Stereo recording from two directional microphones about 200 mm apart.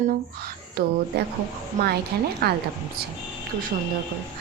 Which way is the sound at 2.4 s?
50° right (ahead or behind).